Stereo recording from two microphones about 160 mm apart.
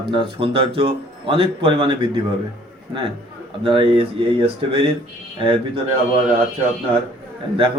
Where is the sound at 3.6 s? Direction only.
35° right (ahead or behind).